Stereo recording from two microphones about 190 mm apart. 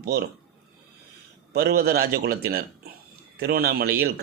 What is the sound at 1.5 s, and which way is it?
Speech, 55° right (ahead or behind).